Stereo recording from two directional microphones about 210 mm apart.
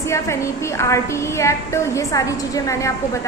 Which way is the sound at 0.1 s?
15° left (ahead or behind).